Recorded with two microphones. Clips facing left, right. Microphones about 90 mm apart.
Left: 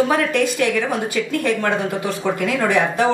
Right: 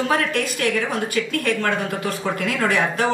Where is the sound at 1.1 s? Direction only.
20° left (ahead or behind).